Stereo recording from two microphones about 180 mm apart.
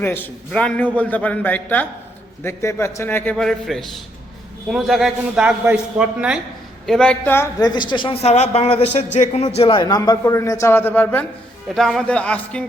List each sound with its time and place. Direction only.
0.0 s a man's voice: 10° left (ahead or behind)